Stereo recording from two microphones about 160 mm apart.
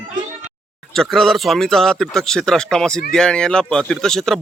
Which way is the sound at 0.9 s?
Centre (ahead or behind).